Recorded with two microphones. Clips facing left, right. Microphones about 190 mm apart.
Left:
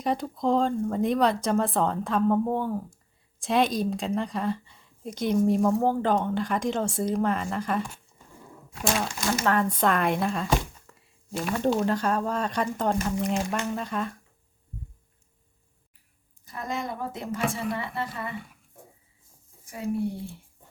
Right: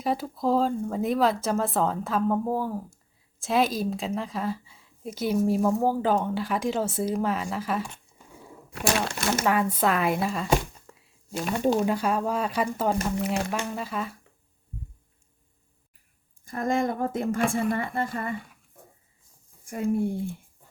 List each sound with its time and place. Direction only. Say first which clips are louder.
0.0 s a woman's voice: even; 5° right (ahead or behind)
9.0 s speech: right 1 dB; 65° right (ahead or behind)
9.4 s a woman's voice: even; 5° right (ahead or behind)
10.9 s a sound: even; centre (ahead or behind)
11.5 s a woman's voice: right 1 dB; 10° right (ahead or behind)
16.5 s speech: right 7 dB; 50° right (ahead or behind)
19.6 s speech: right 3 dB; 50° right (ahead or behind)